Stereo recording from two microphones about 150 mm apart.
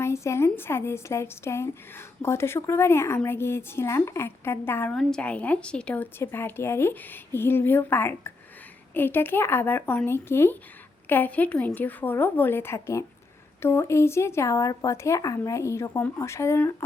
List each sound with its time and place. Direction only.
0.0 s speech: 20° left (ahead or behind)